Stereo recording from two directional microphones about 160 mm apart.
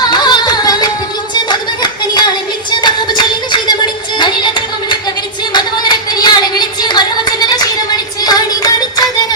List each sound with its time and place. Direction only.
0.1 s music: 25° left (ahead or behind)
1.3 s hands: 25° left (ahead or behind)
2.6 s music: 30° left (ahead or behind)
4.2 s singing: 30° left (ahead or behind)